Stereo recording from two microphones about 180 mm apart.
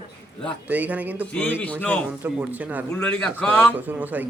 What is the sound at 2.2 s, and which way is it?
Speech, 10° right (ahead or behind).